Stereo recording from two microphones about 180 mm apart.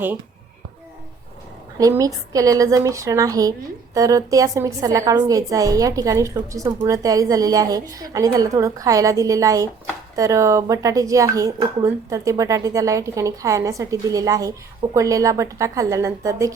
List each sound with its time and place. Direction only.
1.8 s a woman's voice: 20° right (ahead or behind)